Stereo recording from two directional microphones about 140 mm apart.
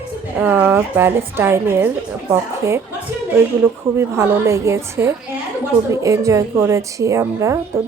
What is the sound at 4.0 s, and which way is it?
A woman's voice, 15° right (ahead or behind).